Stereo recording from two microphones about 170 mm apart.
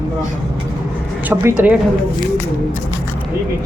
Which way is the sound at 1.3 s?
15° right (ahead or behind).